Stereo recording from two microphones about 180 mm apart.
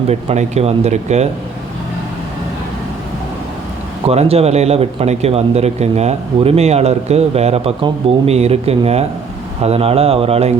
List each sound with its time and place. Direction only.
0.1 s speech: 35° right (ahead or behind)
4.1 s speech: 35° right (ahead or behind)